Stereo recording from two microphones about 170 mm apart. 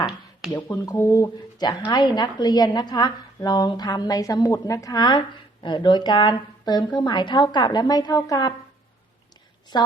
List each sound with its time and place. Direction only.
0.5 s a woman's voice: 20° left (ahead or behind)
9.7 s a woman's voice: 25° left (ahead or behind)